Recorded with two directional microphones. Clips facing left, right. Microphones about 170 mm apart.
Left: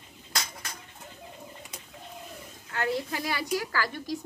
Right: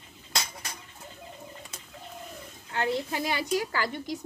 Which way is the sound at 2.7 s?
25° right (ahead or behind).